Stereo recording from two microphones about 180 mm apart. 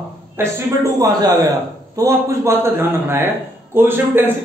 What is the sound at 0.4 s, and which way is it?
A man's voice, 15° right (ahead or behind).